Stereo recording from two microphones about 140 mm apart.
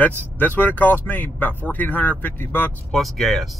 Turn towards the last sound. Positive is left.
turn(degrees=0)  # may be behind; listen again after turning